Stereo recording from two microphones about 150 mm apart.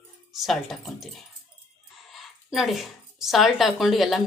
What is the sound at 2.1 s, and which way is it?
A woman's voice, centre (ahead or behind).